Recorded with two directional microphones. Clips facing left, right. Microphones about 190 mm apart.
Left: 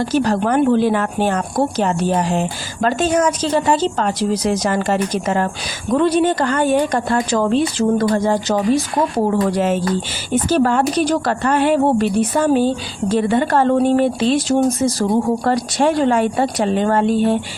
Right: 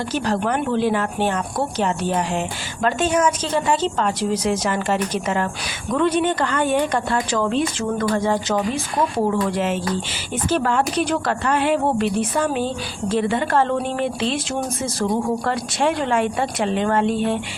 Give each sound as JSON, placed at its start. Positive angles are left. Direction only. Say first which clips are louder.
{"t": 0.1, "sound": "a woman's voice", "louder": "left 4 dB", "side_deg": 40}
{"t": 15.4, "sound": "a woman's voice", "louder": "left 5 dB", "side_deg": 40}